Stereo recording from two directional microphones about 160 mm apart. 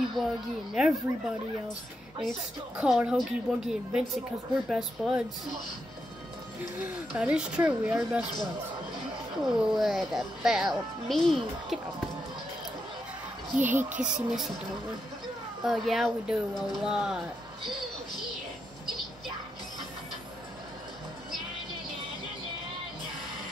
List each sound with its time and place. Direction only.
0.2 s a sound: centre (ahead or behind)
1.1 s speech: 15° right (ahead or behind)
2.8 s speech: 5° right (ahead or behind)
6.8 s speech: 5° right (ahead or behind)
13.6 s speech: 10° right (ahead or behind)
13.8 s speech: 50° right (ahead or behind)
15.6 s speech: centre (ahead or behind)